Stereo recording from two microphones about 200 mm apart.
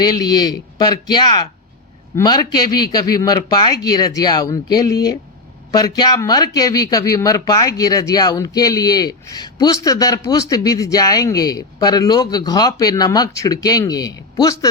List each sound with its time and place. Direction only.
0.0 s speech: 20° left (ahead or behind)